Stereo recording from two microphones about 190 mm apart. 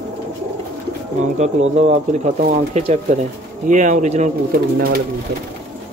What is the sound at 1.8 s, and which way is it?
Speech, 40° right (ahead or behind).